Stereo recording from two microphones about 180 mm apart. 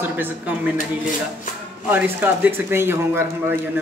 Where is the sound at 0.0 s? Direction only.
10° right (ahead or behind).